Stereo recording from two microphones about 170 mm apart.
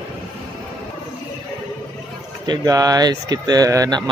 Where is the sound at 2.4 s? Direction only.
25° right (ahead or behind).